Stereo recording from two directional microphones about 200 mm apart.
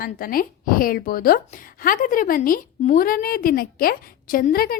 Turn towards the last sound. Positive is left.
turn(degrees=45)  # may be behind; listen again after turning